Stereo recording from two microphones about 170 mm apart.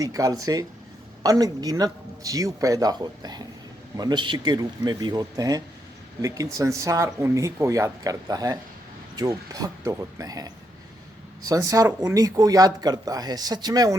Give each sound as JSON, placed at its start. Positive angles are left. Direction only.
{"t": 0.0, "sound": "speech", "side_deg": -20}